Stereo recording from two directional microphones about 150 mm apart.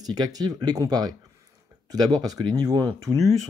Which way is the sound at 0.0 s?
25° right (ahead or behind).